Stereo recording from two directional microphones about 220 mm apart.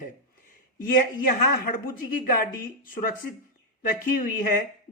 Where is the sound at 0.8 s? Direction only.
40° left (ahead or behind).